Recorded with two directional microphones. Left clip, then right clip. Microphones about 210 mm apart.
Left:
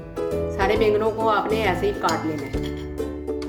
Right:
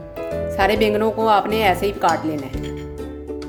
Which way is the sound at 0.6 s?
50° right (ahead or behind).